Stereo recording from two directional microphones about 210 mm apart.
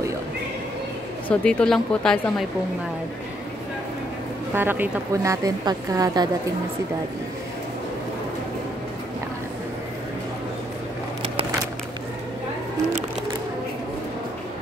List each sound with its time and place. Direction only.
1.3 s a woman's voice: 5° left (ahead or behind)
4.6 s a woman's voice: 10° right (ahead or behind)